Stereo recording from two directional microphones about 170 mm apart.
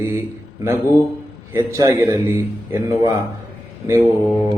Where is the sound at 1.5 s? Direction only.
15° right (ahead or behind).